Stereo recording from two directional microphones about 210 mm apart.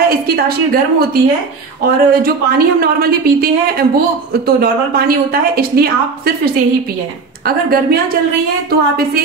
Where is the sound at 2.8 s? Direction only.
45° right (ahead or behind).